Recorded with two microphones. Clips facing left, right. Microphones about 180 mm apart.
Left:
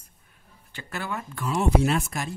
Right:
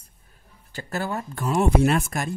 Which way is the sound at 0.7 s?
40° right (ahead or behind).